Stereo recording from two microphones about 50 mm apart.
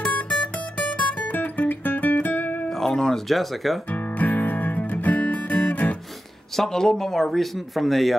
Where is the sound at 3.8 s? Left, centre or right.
Left.